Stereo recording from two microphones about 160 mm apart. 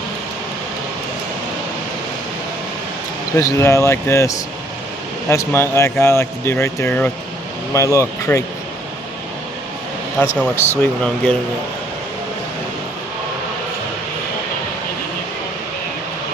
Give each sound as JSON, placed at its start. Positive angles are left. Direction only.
{"t": 3.3, "sound": "speech", "side_deg": 20}
{"t": 7.7, "sound": "speech", "side_deg": 20}
{"t": 10.2, "sound": "speech", "side_deg": 10}